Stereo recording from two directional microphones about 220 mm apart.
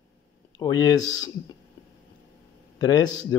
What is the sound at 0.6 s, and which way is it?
Speech, 15° left (ahead or behind).